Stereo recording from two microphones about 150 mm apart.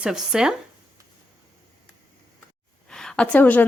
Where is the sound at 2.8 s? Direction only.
5° left (ahead or behind).